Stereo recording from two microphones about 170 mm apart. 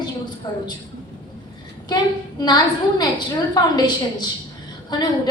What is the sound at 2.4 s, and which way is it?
A woman's voice, 25° left (ahead or behind).